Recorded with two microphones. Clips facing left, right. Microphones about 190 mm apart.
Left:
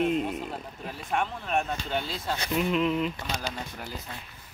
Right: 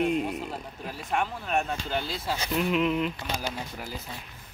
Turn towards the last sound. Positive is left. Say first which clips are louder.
# right 1 dB
turn(degrees=-5)  # may be behind; listen again after turning